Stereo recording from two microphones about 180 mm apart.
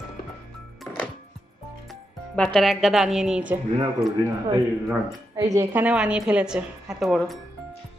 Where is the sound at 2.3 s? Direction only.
Centre (ahead or behind).